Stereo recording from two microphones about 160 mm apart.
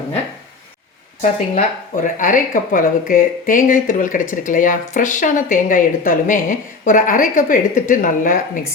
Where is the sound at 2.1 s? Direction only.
55° left (ahead or behind).